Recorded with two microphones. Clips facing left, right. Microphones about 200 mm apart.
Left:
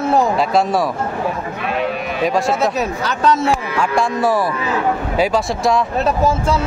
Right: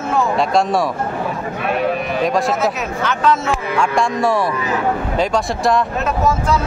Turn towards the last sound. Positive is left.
turn(degrees=30)  # may be behind; listen again after turning